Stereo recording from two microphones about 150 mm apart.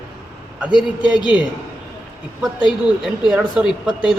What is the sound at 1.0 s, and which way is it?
Speech, 30° left (ahead or behind).